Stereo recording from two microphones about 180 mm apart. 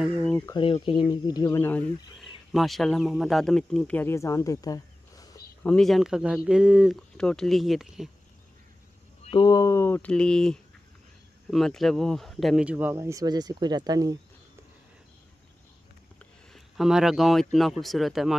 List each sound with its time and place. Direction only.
0.5 s speech: 30° left (ahead or behind); by 1.9 s 10° left (ahead or behind)
2.1 s a man's voice: centre (ahead or behind); by 5.4 s 20° left (ahead or behind)
5.6 s speech: 5° left (ahead or behind)
9.2 s speech: 25° left (ahead or behind); by 14.1 s 20° right (ahead or behind)
16.5 s speech: centre (ahead or behind)